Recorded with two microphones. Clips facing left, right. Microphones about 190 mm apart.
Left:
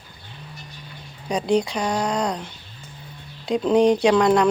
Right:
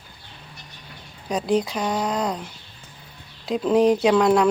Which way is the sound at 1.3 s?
Centre (ahead or behind).